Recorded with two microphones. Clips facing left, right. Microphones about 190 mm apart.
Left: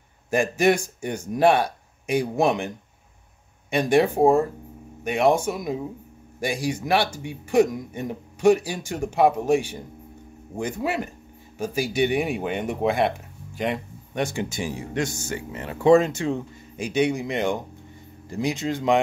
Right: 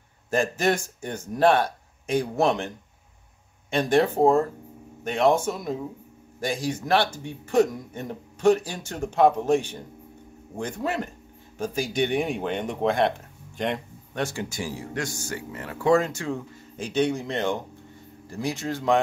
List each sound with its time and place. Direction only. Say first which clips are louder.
0.3 s a man's voice: left 3 dB; 10° left (ahead or behind)
3.7 s a man's voice: left 2 dB; 10° left (ahead or behind)
13.6 s a sound: left 1 dB; 5° left (ahead or behind)
14.2 s a man's voice: left 3 dB; 20° left (ahead or behind)